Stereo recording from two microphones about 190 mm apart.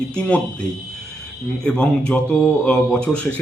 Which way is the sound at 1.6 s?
5° left (ahead or behind).